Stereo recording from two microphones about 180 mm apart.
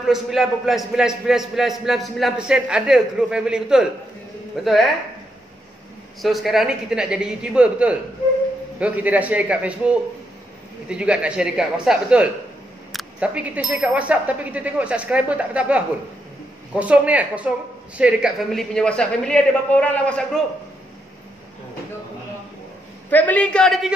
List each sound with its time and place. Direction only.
0.0 s a man's voice: centre (ahead or behind)
6.2 s a man's voice: centre (ahead or behind)
23.0 s a woman's voice: 10° left (ahead or behind)